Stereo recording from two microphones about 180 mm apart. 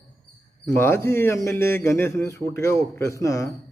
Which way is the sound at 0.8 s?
15° left (ahead or behind).